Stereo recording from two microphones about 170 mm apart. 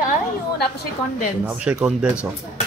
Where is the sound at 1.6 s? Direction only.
5° right (ahead or behind).